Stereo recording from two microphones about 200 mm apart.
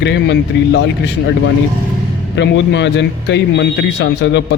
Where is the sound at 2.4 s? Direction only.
60° left (ahead or behind).